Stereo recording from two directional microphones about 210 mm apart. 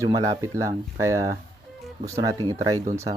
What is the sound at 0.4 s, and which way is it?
Speech, 15° right (ahead or behind).